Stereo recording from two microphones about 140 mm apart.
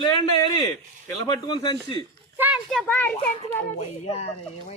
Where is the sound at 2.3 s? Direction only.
10° right (ahead or behind).